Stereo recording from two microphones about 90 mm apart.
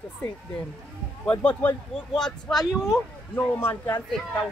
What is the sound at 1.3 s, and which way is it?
Speech, 15° left (ahead or behind).